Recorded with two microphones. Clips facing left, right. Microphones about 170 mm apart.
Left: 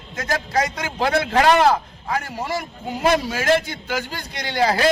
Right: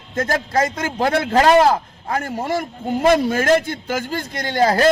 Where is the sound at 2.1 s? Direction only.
50° right (ahead or behind).